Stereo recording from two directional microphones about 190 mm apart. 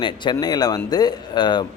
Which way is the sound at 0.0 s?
25° left (ahead or behind).